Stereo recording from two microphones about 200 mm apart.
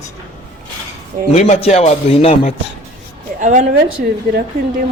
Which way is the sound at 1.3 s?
35° left (ahead or behind).